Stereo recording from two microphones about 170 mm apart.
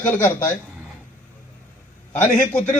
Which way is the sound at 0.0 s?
10° left (ahead or behind).